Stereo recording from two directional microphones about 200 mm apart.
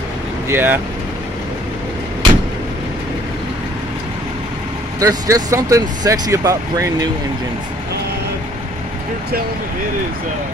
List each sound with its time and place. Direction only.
0.5 s speech: 10° right (ahead or behind)
5.0 s speech: 15° right (ahead or behind)